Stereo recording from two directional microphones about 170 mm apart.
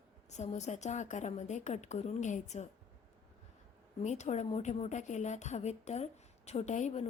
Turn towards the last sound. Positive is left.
turn(degrees=45)  # may be behind; listen again after turning